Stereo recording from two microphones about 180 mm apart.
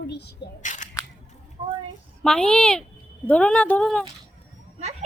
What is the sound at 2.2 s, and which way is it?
Speech, 5° left (ahead or behind).